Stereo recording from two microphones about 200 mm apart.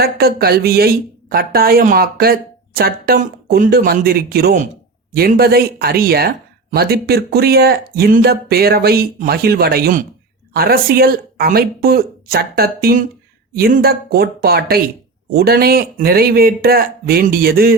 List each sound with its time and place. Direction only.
0.0 s speech: 50° right (ahead or behind)